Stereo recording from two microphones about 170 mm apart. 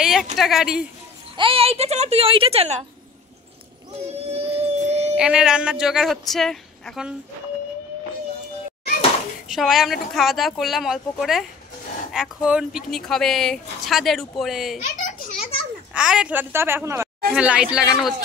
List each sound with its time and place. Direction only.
0.0 s speech: centre (ahead or behind)
1.3 s a woman's voice: 30° right (ahead or behind)
4.4 s music: 35° right (ahead or behind)
5.1 s speech: 5° right (ahead or behind)
9.5 s speech: centre (ahead or behind)
14.8 s a sound: 50° left (ahead or behind)
15.9 s a woman's voice: 5° right (ahead or behind)